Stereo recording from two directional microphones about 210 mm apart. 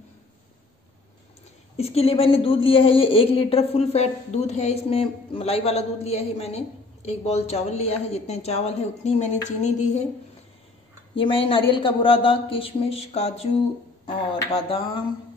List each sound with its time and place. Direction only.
1.8 s a woman's voice: 30° left (ahead or behind)
11.1 s a woman's voice: 25° left (ahead or behind)